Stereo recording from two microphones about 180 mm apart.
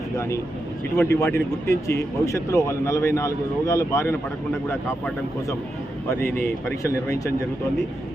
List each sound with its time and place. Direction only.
0.9 s a man's voice: 15° left (ahead or behind)
6.7 s a man's voice: 15° left (ahead or behind)